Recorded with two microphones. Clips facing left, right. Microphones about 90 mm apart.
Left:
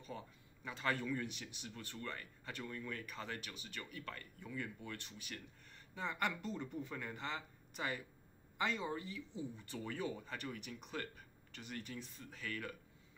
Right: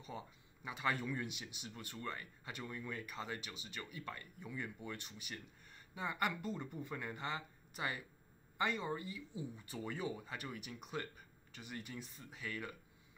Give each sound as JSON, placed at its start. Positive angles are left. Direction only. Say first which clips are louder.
{"t": 0.7, "sound": "speech", "louder": "even", "side_deg": -15}